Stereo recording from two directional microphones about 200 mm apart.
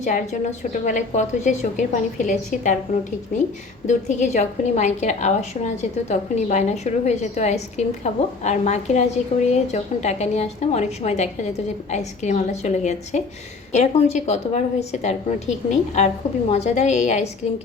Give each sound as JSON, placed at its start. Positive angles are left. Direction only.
{"t": 0.7, "sound": "a woman's voice", "side_deg": 40}